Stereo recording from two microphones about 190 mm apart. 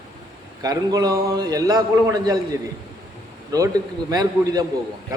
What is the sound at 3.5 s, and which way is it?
A man's voice, 20° right (ahead or behind).